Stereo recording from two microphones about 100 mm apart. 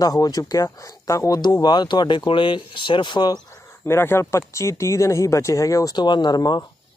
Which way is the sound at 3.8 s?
25° left (ahead or behind).